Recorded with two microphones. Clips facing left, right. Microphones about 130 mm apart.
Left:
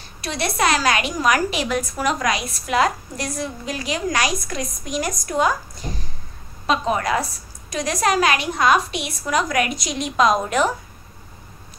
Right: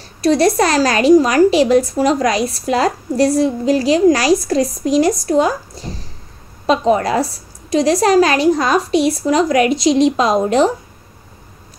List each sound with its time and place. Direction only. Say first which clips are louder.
0.2 s a woman's voice: right 10 dB; 40° right (ahead or behind)